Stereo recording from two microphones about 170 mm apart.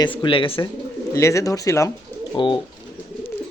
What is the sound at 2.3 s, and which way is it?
Bird, 30° left (ahead or behind).